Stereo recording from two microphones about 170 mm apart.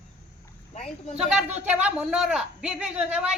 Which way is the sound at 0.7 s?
45° left (ahead or behind).